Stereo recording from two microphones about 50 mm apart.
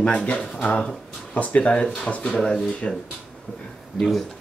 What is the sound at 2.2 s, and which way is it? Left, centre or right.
Speech, centre.